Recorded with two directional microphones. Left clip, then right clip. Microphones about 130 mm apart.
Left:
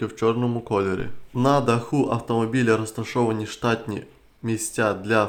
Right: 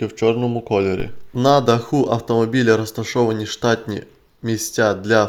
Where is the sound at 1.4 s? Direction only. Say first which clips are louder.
Right 6 dB; 30° right (ahead or behind).